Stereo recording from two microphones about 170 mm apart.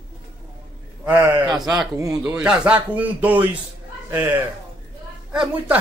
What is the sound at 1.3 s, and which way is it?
Speech, 25° right (ahead or behind).